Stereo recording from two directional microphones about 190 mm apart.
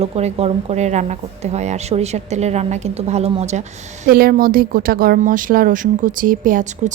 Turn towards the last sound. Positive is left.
turn(degrees=-40)  # may be behind; listen again after turning